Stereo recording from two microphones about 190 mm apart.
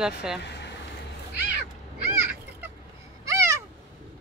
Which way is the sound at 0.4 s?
60° left (ahead or behind).